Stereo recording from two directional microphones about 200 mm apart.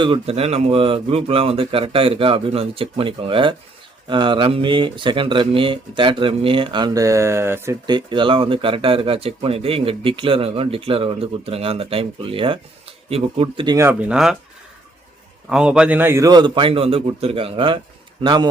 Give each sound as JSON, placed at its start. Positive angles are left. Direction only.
{"t": 0.0, "sound": "speech", "side_deg": -30}
{"t": 13.7, "sound": "speech", "side_deg": -10}
{"t": 15.4, "sound": "a man's voice", "side_deg": -5}